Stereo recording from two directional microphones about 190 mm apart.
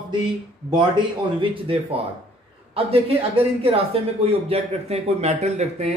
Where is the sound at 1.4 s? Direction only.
30° right (ahead or behind).